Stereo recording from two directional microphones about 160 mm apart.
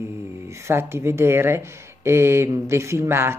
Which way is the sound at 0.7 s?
15° right (ahead or behind).